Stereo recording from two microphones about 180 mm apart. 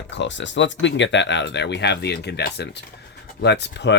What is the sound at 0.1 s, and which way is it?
Speech, 80° left.